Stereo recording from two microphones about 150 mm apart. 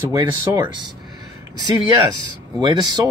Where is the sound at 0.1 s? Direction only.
30° right (ahead or behind).